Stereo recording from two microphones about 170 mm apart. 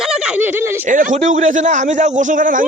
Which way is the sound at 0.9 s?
50° right (ahead or behind).